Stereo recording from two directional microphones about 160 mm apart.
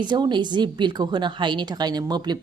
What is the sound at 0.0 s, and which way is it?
A woman's voice, 30° right (ahead or behind).